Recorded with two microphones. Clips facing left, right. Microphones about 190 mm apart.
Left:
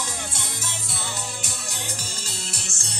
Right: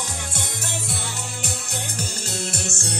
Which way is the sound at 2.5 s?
55° right (ahead or behind).